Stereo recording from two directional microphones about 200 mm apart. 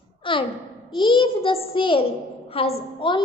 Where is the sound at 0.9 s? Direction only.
25° left (ahead or behind).